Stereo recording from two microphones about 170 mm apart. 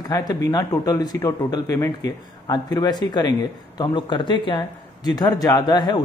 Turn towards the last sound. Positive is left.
turn(degrees=25)  # may be behind; listen again after turning